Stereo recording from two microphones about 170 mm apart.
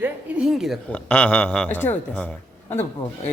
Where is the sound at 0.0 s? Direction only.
5° right (ahead or behind).